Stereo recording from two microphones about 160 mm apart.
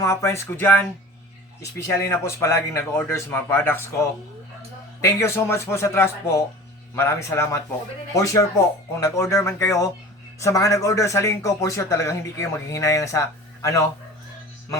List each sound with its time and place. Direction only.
0.0 s speech: 20° left (ahead or behind)
1.9 s a man's voice: 15° left (ahead or behind)